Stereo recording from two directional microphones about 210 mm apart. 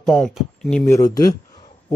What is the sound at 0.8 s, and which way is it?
Speech, 15° left (ahead or behind).